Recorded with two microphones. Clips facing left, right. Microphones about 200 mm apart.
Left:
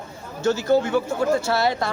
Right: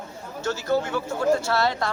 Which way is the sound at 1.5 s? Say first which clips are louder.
Left 2 dB; 10° left (ahead or behind).